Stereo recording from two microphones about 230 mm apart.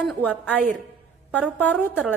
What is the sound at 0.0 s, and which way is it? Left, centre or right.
A woman's voice, centre.